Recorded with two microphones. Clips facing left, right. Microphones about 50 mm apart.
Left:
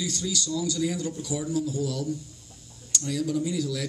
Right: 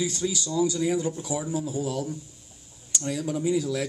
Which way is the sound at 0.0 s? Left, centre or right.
Right.